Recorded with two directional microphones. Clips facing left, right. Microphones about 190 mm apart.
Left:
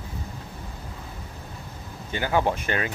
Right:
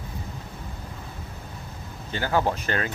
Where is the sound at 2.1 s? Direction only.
15° left (ahead or behind).